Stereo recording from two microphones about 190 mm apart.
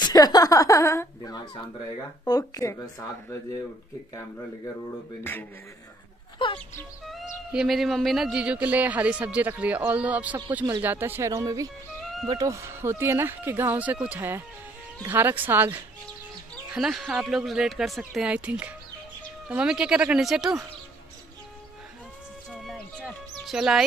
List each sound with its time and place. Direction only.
0.0 s speech: 20° left (ahead or behind)
5.2 s speech: 10° left (ahead or behind)
6.3 s speech: 25° left (ahead or behind)
7.1 s speech: centre (ahead or behind)
22.5 s music: centre (ahead or behind)